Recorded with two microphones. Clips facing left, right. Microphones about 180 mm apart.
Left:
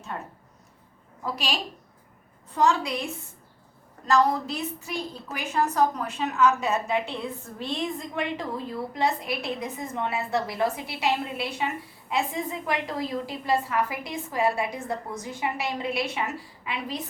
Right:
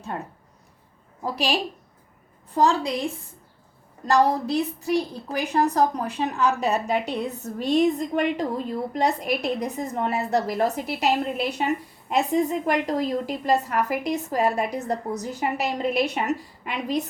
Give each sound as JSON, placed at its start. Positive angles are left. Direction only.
{"t": 0.1, "sound": "a woman's voice", "side_deg": -30}
{"t": 2.6, "sound": "a woman's voice", "side_deg": -35}